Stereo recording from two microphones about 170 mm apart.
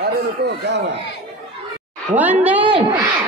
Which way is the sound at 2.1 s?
10° right (ahead or behind).